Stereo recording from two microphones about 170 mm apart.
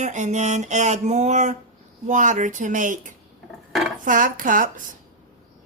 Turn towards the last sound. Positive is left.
turn(degrees=-50)  # may be behind; listen again after turning